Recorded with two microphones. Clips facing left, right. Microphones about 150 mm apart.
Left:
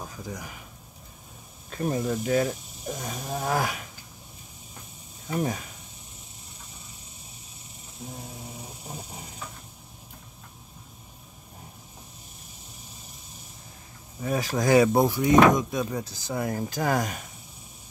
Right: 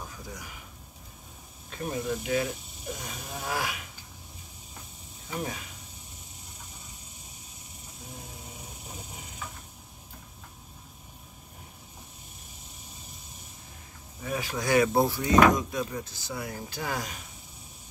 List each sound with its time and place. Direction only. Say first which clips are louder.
0.0 s a sound: left 4 dB; 45° left (ahead or behind)
1.7 s speech: left 4 dB; 45° left (ahead or behind)
5.3 s speech: left 6 dB; 40° left (ahead or behind)
14.2 s speech: left 6 dB; 40° left (ahead or behind)
15.0 s speech: left 3 dB; 15° left (ahead or behind)
16.0 s speech: left 6 dB; 40° left (ahead or behind)